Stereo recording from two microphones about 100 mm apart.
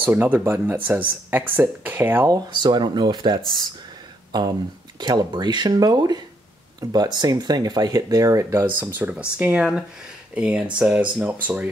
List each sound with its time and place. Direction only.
0.0 s speech: 20° right (ahead or behind)
2.2 s speech: 45° right (ahead or behind)
8.6 s speech: 20° right (ahead or behind)